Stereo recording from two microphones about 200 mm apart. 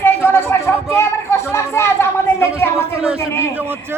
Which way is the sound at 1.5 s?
15° left (ahead or behind).